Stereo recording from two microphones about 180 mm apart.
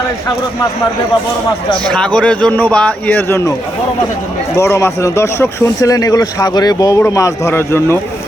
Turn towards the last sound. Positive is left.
turn(degrees=15)  # may be behind; listen again after turning